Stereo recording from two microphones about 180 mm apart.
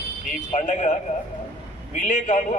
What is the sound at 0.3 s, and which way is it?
Speech, 40° left (ahead or behind).